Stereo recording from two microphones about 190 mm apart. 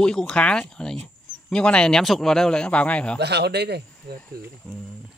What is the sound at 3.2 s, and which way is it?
Speech, 60° right (ahead or behind).